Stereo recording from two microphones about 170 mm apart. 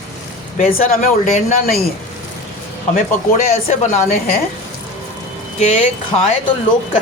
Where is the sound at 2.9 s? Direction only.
55° left (ahead or behind).